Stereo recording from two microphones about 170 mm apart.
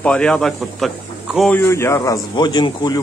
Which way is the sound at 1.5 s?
15° left (ahead or behind).